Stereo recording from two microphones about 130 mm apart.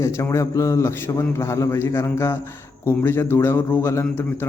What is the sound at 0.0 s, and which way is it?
Speech, 20° left (ahead or behind).